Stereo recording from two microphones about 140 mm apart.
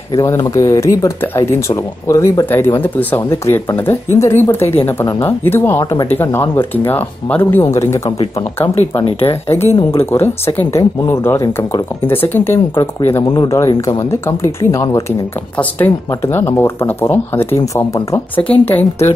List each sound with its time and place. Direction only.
0.2 s speech: 25° left (ahead or behind)
8.7 s speech: 45° left (ahead or behind)
9.3 s speech: 15° left (ahead or behind)